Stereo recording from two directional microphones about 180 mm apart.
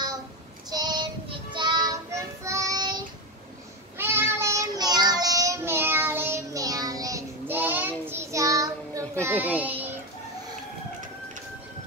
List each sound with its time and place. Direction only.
0.7 s child singing: 25° right (ahead or behind)
4.0 s child singing: 10° right (ahead or behind)